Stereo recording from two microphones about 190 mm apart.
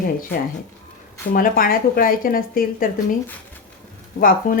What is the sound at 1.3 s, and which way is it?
A woman's voice, 50° left (ahead or behind).